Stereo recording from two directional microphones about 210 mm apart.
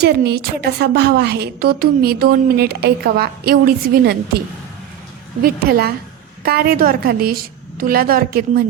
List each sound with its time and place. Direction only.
0.0 s a woman's voice: 50° right (ahead or behind)
5.4 s a woman's voice: 45° right (ahead or behind)